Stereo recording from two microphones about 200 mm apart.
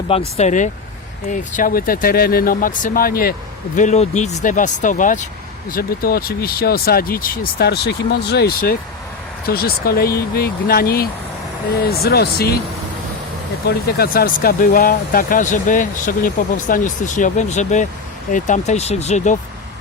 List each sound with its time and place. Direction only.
0.3 s speech: 35° left (ahead or behind)
3.8 s speech: 35° left (ahead or behind); by 12.5 s 50° left (ahead or behind)
13.7 s speech: 50° left (ahead or behind); by 19.4 s 35° left (ahead or behind)